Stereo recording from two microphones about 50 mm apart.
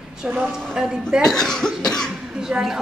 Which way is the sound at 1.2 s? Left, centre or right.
Centre.